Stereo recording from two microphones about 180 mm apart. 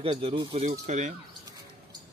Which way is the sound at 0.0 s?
30° right (ahead or behind).